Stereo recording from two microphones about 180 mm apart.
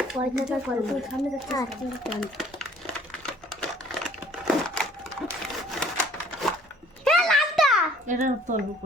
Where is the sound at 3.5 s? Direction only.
Centre (ahead or behind).